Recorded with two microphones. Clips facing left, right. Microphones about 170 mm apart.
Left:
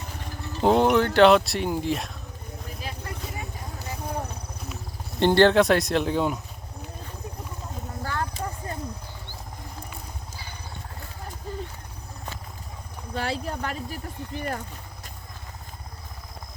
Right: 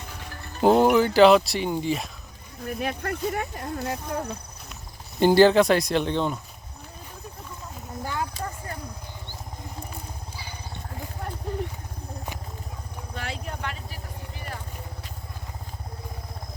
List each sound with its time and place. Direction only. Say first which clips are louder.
0.6 s speech: right 2 dB; 5° right (ahead or behind)
2.6 s speech: right 10 dB; 60° right (ahead or behind)
5.2 s speech: right 1 dB; 5° right (ahead or behind)
8.0 s clip-clop: even; 15° right (ahead or behind)
8.3 s clip-clop: left 1 dB; 20° left (ahead or behind)
13.1 s vehicle: left 6 dB; 35° left (ahead or behind)